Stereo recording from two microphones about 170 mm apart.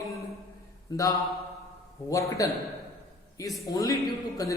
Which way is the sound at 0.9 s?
20° left (ahead or behind).